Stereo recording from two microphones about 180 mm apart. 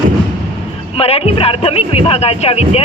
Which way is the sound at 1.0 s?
35° left (ahead or behind).